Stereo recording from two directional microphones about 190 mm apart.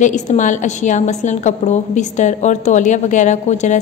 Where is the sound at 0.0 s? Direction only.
40° left (ahead or behind).